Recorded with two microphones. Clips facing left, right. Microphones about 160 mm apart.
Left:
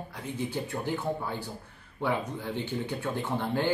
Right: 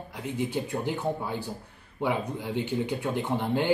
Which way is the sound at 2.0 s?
15° right (ahead or behind).